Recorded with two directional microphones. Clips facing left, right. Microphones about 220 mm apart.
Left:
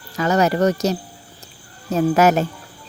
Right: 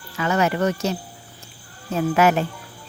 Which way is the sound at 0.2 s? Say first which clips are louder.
Left 4 dB; 40° left (ahead or behind).